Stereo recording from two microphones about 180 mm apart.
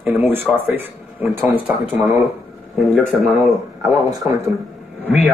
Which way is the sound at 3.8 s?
20° right (ahead or behind).